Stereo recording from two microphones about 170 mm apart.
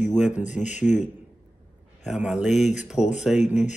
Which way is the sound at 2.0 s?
5° right (ahead or behind).